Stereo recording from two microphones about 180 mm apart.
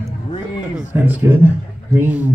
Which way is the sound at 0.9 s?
10° right (ahead or behind).